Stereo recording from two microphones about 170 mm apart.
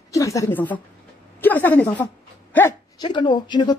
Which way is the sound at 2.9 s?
25° left (ahead or behind).